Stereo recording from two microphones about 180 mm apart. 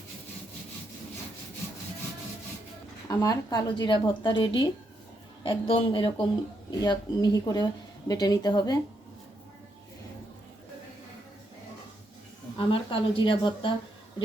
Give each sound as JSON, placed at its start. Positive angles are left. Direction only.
{"t": 3.1, "sound": "speech", "side_deg": 20}
{"t": 12.5, "sound": "speech", "side_deg": 30}